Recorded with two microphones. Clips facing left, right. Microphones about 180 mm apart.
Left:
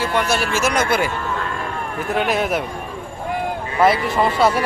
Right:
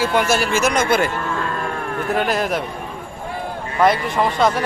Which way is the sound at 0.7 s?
50° right (ahead or behind).